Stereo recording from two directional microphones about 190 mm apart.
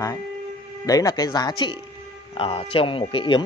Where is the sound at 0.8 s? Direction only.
20° left (ahead or behind).